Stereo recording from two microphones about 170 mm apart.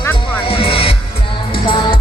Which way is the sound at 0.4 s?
30° left (ahead or behind).